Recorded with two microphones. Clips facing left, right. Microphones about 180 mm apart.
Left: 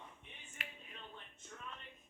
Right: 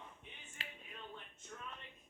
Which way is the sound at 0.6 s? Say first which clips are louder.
Even; 30° right (ahead or behind).